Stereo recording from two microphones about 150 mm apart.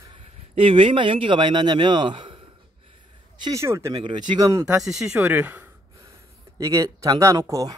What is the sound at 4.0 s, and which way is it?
Speech, 30° right (ahead or behind).